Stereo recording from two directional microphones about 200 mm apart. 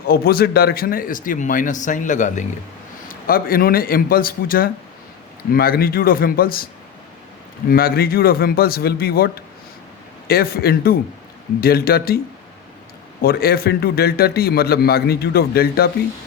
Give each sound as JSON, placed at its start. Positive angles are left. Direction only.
{"t": 0.1, "sound": "a man's voice", "side_deg": 50}
{"t": 7.7, "sound": "a man's voice", "side_deg": 50}
{"t": 13.2, "sound": "a man's voice", "side_deg": 50}